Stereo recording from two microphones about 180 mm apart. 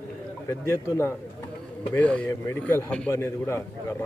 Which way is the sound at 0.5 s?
15° left (ahead or behind).